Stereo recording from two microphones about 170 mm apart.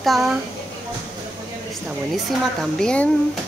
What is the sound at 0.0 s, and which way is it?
Speech, centre (ahead or behind).